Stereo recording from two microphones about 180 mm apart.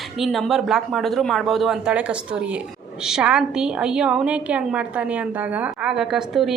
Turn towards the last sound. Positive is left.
turn(degrees=0)  # may be behind; listen again after turning